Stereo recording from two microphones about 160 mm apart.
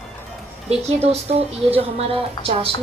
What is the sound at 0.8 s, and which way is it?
Speech, 40° right (ahead or behind).